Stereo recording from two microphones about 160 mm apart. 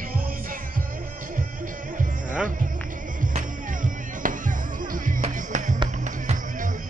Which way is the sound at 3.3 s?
55° right (ahead or behind).